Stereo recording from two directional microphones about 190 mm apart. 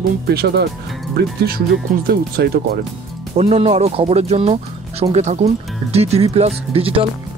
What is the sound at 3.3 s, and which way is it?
Speech, 30° right (ahead or behind).